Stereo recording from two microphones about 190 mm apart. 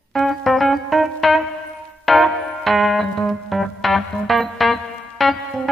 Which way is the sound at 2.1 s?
Centre (ahead or behind).